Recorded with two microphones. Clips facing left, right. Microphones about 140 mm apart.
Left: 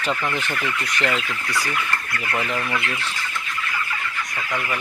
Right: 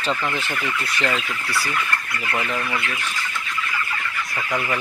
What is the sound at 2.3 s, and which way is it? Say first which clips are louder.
Speech: even; centre (ahead or behind).